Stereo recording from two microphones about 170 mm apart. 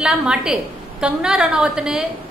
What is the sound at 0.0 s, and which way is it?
A woman's voice, 5° right (ahead or behind).